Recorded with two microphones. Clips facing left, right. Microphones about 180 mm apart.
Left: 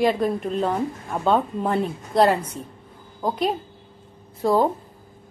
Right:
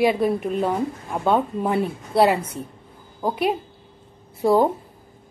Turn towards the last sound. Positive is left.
turn(degrees=-10)  # may be behind; listen again after turning